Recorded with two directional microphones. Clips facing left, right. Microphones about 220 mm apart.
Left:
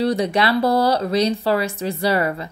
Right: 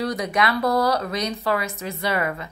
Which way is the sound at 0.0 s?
30° left (ahead or behind).